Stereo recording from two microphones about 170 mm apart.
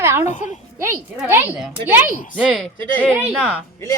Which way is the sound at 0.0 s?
15° right (ahead or behind).